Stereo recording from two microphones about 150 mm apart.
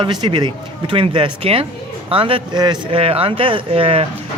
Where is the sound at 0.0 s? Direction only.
30° right (ahead or behind).